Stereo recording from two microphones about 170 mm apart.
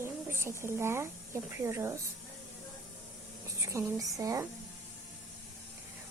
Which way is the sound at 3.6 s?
20° right (ahead or behind).